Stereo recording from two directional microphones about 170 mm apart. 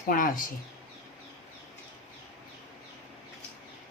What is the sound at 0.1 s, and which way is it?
Speech, 55° left (ahead or behind).